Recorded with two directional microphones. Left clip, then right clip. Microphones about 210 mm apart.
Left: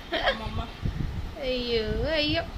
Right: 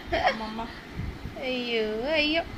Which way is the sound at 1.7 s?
10° left (ahead or behind).